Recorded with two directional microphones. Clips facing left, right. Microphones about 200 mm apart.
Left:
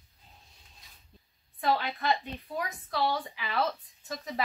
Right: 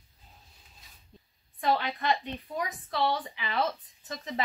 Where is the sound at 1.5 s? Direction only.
5° left (ahead or behind).